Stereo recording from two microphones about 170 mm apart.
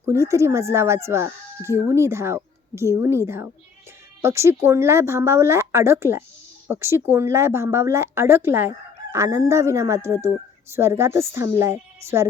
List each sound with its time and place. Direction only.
0.0 s speech: 15° right (ahead or behind)